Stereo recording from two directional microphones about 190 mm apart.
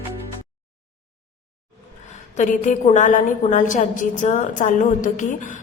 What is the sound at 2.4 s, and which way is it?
A woman's voice, 40° left (ahead or behind).